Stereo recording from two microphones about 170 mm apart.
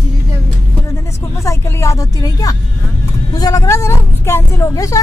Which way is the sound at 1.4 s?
15° left (ahead or behind).